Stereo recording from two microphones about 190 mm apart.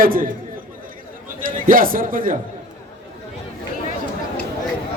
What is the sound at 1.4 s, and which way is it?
Speech, 45° right (ahead or behind).